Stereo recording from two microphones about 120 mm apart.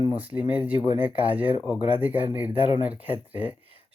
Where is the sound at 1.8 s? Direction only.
45° left (ahead or behind).